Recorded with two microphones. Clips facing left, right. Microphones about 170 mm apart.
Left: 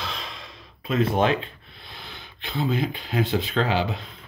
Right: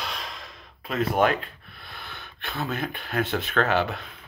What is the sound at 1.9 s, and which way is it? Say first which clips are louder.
Gasp: even; 55° right (ahead or behind).